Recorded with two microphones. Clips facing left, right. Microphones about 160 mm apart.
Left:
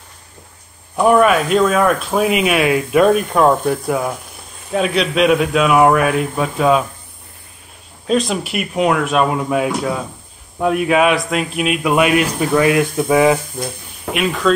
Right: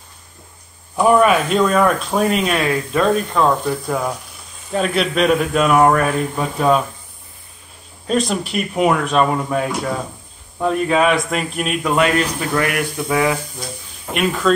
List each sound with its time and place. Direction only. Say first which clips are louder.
0.9 s speech: left 1 dB; centre (ahead or behind)
8.1 s speech: left 2 dB; centre (ahead or behind); by 13.4 s 20° left (ahead or behind)
14.1 s speech: left 1 dB; centre (ahead or behind)